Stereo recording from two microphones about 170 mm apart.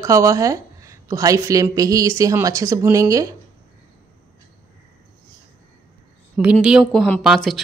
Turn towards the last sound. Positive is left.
turn(degrees=0)  # may be behind; listen again after turning